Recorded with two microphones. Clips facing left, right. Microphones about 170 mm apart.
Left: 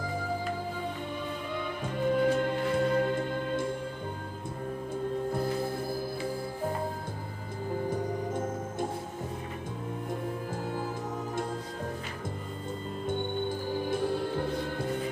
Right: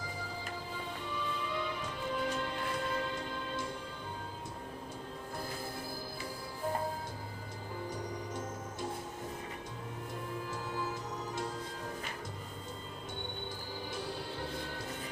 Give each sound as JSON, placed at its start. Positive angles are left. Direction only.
{"t": 1.1, "sound": "music", "side_deg": 50}
{"t": 10.5, "sound": "music", "side_deg": 50}
{"t": 13.8, "sound": "music", "side_deg": 55}